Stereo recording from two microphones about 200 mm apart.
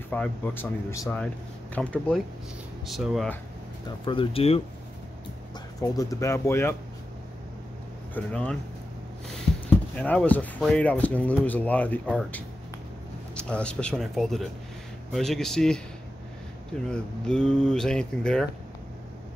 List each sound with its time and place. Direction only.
0.1 s speech: 10° left (ahead or behind)
4.0 s speech: 25° left (ahead or behind)
5.8 s speech: 15° left (ahead or behind)
8.1 s speech: 5° left (ahead or behind)
9.9 s speech: 5° left (ahead or behind)
13.4 s speech: 5° left (ahead or behind)
16.9 s speech: 5° left (ahead or behind)